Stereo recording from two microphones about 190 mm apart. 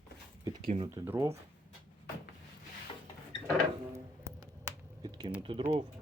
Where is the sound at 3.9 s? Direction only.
15° right (ahead or behind).